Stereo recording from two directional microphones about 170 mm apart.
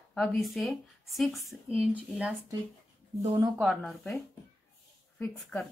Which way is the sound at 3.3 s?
15° right (ahead or behind).